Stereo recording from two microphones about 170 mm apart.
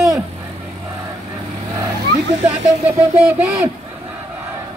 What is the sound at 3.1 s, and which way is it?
Speech, 10° right (ahead or behind).